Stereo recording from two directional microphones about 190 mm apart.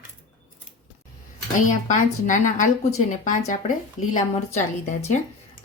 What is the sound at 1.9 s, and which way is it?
A woman's voice, 40° left (ahead or behind).